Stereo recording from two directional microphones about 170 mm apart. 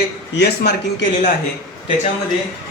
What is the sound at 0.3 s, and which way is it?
Speech, 80° left.